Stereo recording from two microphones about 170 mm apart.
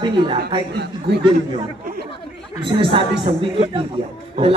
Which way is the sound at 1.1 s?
75° right (ahead or behind).